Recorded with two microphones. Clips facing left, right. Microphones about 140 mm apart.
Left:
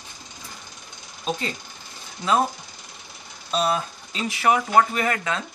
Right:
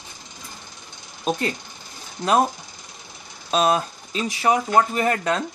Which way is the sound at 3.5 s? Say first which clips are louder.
Right 4 dB; 50° right (ahead or behind).